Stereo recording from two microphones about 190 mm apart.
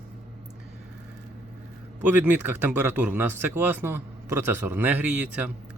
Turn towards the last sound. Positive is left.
turn(degrees=-10)  # may be behind; listen again after turning